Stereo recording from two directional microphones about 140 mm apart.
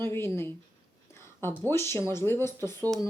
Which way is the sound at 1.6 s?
15° left (ahead or behind).